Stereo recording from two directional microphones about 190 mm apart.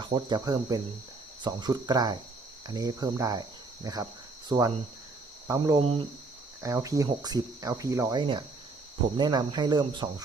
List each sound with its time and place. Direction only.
0.0 s speech: 25° right (ahead or behind)
4.4 s cricket: 20° right (ahead or behind)
5.5 s speech: 20° right (ahead or behind)
6.6 s speech: 15° right (ahead or behind)